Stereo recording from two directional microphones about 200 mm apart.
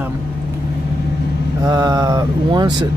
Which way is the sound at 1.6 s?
20° right (ahead or behind).